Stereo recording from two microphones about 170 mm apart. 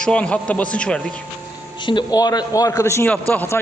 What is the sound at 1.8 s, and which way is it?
A man's voice, 25° left (ahead or behind).